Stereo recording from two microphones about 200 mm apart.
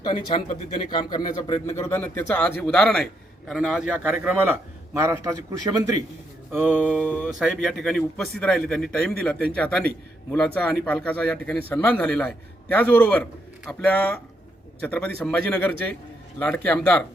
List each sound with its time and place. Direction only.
0.0 s a man's voice: 25° left (ahead or behind); by 6.8 s 10° right (ahead or behind)
6.8 s a man's voice: 5° left (ahead or behind)